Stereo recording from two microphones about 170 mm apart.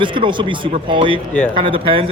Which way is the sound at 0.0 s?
30° right (ahead or behind).